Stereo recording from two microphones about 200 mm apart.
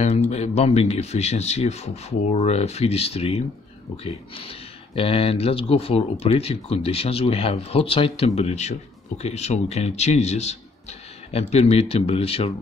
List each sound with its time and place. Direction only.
0.3 s speech: 35° left (ahead or behind)